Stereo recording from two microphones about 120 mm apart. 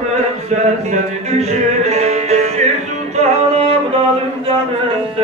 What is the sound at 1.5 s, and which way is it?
Music, 65° right (ahead or behind).